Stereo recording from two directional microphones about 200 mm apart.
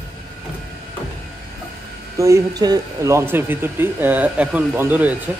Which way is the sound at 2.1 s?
15° right (ahead or behind).